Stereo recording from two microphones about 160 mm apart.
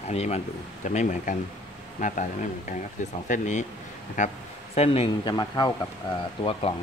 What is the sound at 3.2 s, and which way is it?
Speech, 50° left (ahead or behind).